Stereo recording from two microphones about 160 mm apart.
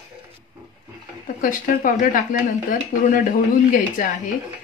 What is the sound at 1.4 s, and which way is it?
Speech, 55° left (ahead or behind).